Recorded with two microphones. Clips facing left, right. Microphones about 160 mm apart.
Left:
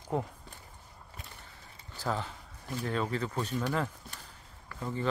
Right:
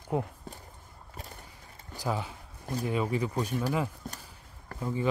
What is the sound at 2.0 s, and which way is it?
Speech, 10° right (ahead or behind).